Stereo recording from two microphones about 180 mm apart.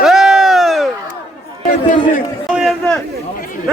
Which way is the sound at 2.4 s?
Centre (ahead or behind).